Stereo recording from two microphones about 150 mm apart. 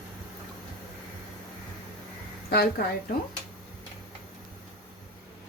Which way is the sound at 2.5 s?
90° left.